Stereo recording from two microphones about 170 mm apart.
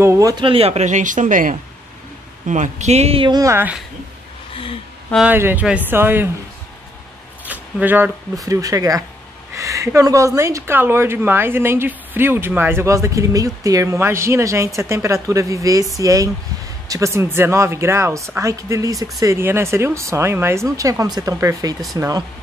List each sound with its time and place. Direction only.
0.0 s speech: 15° right (ahead or behind)
5.1 s a woman's voice: 10° right (ahead or behind)
7.4 s a woman's voice: 10° right (ahead or behind)